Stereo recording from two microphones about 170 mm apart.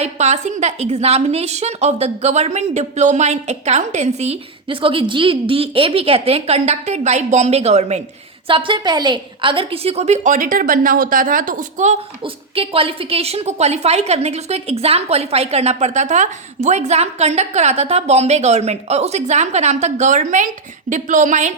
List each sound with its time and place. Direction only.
0.0 s a woman's voice: 40° right (ahead or behind)
8.4 s a woman's voice: 30° right (ahead or behind); by 21.5 s 45° right (ahead or behind)